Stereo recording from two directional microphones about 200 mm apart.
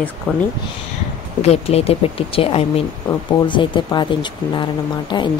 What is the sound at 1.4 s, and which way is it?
Speech, 30° left (ahead or behind).